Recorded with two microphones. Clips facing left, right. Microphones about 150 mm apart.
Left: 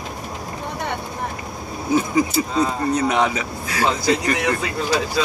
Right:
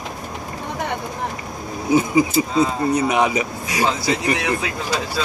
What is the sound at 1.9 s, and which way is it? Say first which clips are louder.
Speech: right 2 dB; 10° right (ahead or behind).